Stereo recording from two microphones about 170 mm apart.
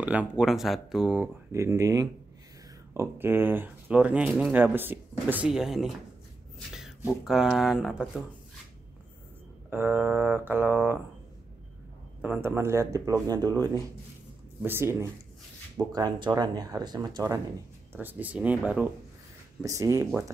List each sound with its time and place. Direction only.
0.0 s speech: 10° right (ahead or behind)
7.2 s speech: centre (ahead or behind)
9.7 s speech: 10° right (ahead or behind)
12.2 s speech: 10° right (ahead or behind)
17.9 s speech: 10° right (ahead or behind)
19.6 s speech: 20° right (ahead or behind)